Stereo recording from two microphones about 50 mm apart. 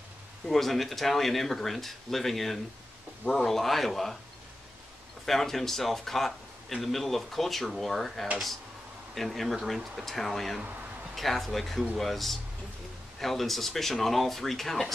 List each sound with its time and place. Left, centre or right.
0.5 s a man's voice: centre
5.2 s a man's voice: centre
10.6 s speech: right
11.1 s a man's voice: centre